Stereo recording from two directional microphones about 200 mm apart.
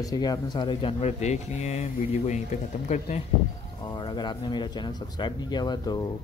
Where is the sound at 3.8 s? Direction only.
20° left (ahead or behind).